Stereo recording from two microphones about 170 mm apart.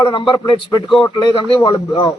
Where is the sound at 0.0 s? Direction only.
25° left (ahead or behind).